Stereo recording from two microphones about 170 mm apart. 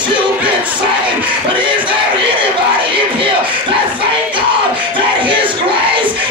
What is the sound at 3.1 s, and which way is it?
Music, 30° right (ahead or behind).